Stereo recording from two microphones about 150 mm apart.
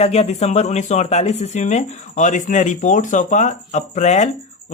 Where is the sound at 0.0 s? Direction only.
45° left (ahead or behind).